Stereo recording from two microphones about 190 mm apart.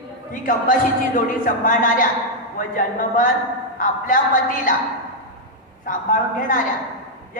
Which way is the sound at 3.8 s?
45° left (ahead or behind).